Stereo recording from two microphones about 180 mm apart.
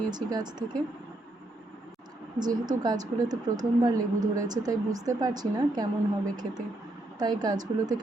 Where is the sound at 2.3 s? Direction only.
20° right (ahead or behind).